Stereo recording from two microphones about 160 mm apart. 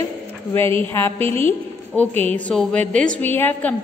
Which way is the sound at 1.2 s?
40° right (ahead or behind).